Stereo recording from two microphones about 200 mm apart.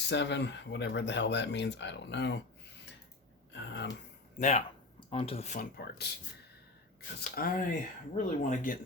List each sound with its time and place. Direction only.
0.1 s speech: 60° left (ahead or behind)
3.5 s speech: 60° left (ahead or behind)
4.4 s speech: 35° left (ahead or behind); by 6.1 s 50° left (ahead or behind)
7.2 s speech: 45° left (ahead or behind)